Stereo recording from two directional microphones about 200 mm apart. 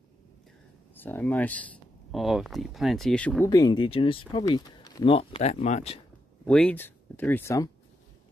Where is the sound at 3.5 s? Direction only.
20° left (ahead or behind).